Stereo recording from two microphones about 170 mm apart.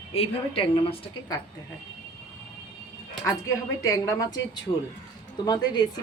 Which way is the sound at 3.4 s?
20° left (ahead or behind).